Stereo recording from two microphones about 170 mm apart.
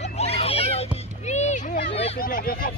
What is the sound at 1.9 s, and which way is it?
Speech, 35° left (ahead or behind).